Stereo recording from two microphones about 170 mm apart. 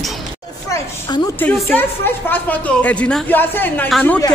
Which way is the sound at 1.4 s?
10° left (ahead or behind).